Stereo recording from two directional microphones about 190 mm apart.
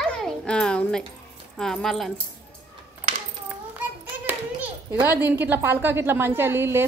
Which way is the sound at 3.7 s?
10° right (ahead or behind).